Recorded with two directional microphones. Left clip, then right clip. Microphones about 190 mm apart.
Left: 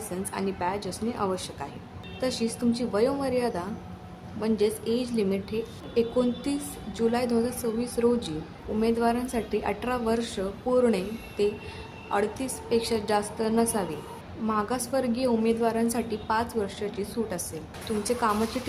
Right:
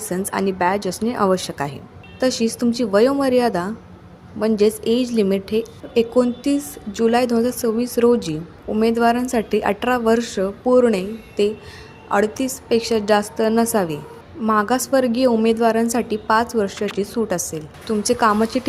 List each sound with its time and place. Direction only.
0.1 s a woman's voice: 45° right (ahead or behind)